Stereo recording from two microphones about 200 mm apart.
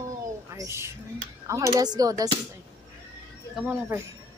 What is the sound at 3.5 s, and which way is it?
Speech, 5° right (ahead or behind).